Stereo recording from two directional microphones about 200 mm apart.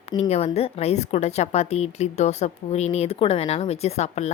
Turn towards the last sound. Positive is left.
turn(degrees=35)  # may be behind; listen again after turning